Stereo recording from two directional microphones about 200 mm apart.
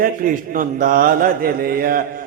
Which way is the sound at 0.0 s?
45° right (ahead or behind).